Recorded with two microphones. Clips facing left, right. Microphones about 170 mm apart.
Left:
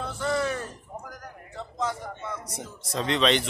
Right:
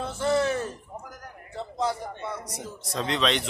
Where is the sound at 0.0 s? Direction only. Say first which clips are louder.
Right 3 dB; 25° right (ahead or behind).